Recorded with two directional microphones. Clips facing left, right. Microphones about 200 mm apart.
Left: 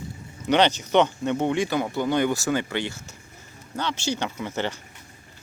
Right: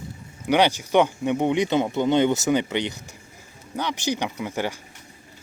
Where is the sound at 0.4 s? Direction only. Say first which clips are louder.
Right 1 dB; 10° right (ahead or behind).